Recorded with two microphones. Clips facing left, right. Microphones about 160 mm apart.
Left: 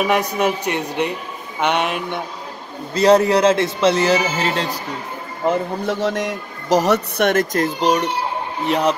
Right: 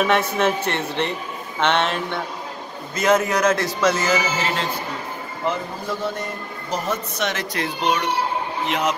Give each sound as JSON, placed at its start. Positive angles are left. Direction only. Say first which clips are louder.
{"t": 0.0, "sound": "speech", "louder": "left 1 dB", "side_deg": 15}
{"t": 2.9, "sound": "speech", "louder": "left 6 dB", "side_deg": 35}
{"t": 5.5, "sound": "speech", "louder": "left 7 dB", "side_deg": 80}